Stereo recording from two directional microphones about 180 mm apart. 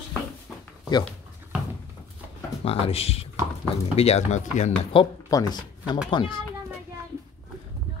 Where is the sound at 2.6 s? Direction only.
35° left (ahead or behind).